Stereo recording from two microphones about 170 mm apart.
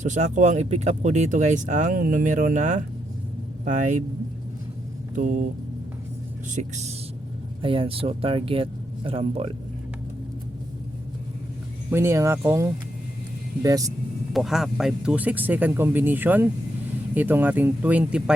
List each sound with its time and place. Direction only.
0.0 s speech: 45° right (ahead or behind)
5.1 s speech: 45° right (ahead or behind)
6.5 s speech: 40° right (ahead or behind)
7.6 s speech: 30° right (ahead or behind)
11.9 s speech: 15° right (ahead or behind)
14.3 s speech: centre (ahead or behind)